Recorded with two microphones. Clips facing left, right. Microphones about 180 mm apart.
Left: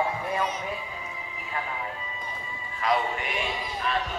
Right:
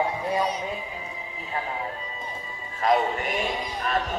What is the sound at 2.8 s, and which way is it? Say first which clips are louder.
Speech: right 4 dB; 45° right (ahead or behind).